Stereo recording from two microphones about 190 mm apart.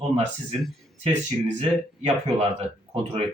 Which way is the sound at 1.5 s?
35° right (ahead or behind).